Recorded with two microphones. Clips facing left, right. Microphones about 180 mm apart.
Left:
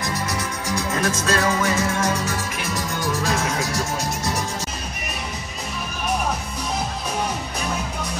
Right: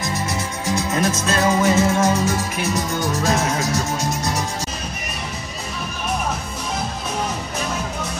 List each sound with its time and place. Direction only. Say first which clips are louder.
0.0 s music: right 1 dB; 25° right (ahead or behind)